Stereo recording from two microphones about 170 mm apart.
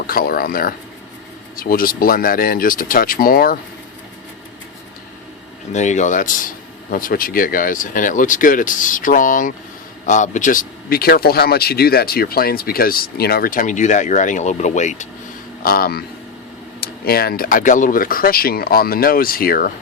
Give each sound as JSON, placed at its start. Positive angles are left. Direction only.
{"t": 0.1, "sound": "speech", "side_deg": 60}
{"t": 5.7, "sound": "speech", "side_deg": 45}
{"t": 15.6, "sound": "speech", "side_deg": 60}